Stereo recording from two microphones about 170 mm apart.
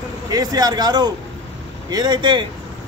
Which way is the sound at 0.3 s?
20° right (ahead or behind).